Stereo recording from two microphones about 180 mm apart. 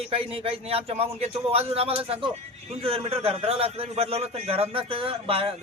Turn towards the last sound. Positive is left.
turn(degrees=-30)  # may be behind; listen again after turning